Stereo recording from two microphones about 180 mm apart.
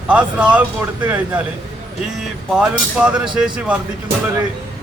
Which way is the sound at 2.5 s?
5° right (ahead or behind).